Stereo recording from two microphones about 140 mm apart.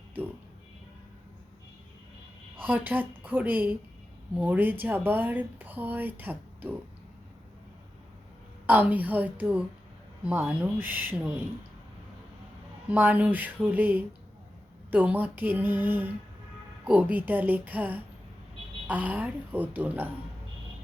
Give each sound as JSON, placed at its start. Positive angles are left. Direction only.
{"t": 2.6, "sound": "speech", "side_deg": -10}
{"t": 8.6, "sound": "speech", "side_deg": -10}
{"t": 12.9, "sound": "speech", "side_deg": -10}